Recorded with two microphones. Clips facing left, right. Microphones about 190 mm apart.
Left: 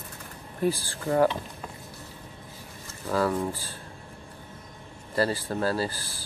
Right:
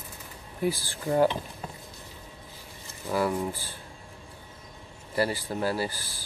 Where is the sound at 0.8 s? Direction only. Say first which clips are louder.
Right 1 dB; 20° right (ahead or behind).